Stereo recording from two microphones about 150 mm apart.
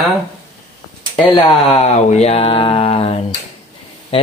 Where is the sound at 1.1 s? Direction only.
30° left (ahead or behind).